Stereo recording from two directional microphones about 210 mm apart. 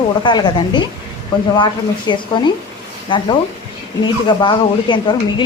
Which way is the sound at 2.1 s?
20° left (ahead or behind).